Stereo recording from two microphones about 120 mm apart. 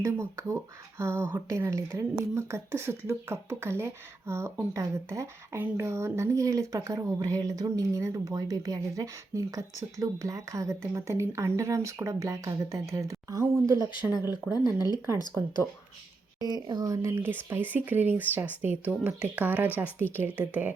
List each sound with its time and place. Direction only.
0.0 s speech: 25° right (ahead or behind)
14.5 s speech: 35° left (ahead or behind)
16.6 s speech: 35° right (ahead or behind); by 20.7 s 15° right (ahead or behind)